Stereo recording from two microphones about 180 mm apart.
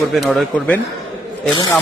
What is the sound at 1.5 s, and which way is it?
Speech, 20° left (ahead or behind).